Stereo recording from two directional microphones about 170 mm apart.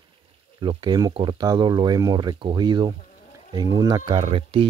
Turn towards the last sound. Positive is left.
turn(degrees=-35)  # may be behind; listen again after turning